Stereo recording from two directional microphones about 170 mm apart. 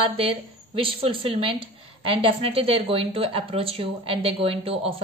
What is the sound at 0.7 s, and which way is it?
A woman's voice, 30° right (ahead or behind).